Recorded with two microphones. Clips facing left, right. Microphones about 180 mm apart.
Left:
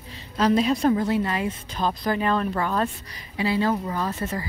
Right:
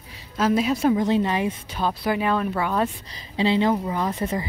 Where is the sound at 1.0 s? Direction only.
20° right (ahead or behind).